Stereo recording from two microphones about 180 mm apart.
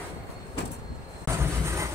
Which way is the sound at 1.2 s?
15° right (ahead or behind).